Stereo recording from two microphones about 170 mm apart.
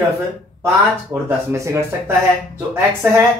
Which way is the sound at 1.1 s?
15° right (ahead or behind).